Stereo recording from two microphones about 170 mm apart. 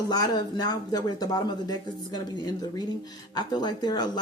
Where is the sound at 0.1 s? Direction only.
20° left (ahead or behind).